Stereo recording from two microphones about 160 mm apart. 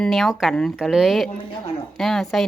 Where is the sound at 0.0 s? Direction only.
Centre (ahead or behind).